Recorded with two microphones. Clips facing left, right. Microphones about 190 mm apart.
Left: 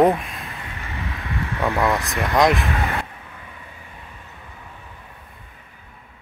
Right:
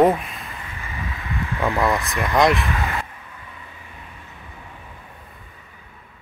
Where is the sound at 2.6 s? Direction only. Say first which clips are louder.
Left 1 dB; 35° left (ahead or behind).